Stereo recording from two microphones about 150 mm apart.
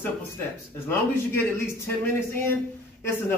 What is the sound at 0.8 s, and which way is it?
A man's voice, 15° left (ahead or behind).